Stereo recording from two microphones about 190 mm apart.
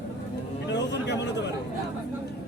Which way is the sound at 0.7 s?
65° left (ahead or behind).